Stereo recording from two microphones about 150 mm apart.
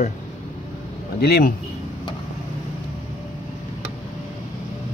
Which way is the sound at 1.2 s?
90° left.